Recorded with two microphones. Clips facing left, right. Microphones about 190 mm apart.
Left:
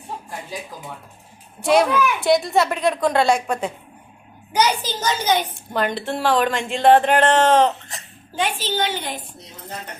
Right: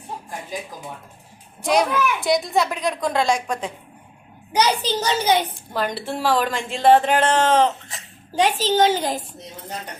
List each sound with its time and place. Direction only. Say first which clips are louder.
1.6 s speech: left 3 dB; centre (ahead or behind)
4.5 s a child's voice: right 1 dB; 30° right (ahead or behind)
5.7 s speech: left 2 dB; 5° right (ahead or behind)
8.4 s a child's voice: right 5 dB; 40° right (ahead or behind)